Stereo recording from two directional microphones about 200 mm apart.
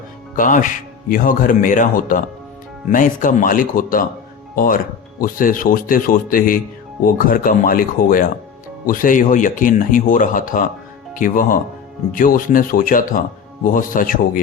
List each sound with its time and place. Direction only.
0.3 s speech: 40° left (ahead or behind)